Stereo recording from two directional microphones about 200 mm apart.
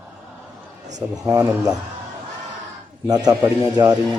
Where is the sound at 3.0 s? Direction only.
20° right (ahead or behind).